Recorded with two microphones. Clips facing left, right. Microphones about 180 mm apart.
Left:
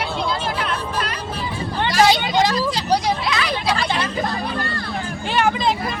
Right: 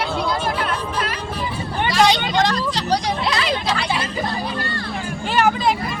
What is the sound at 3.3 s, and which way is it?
Hubbub, 30° right (ahead or behind).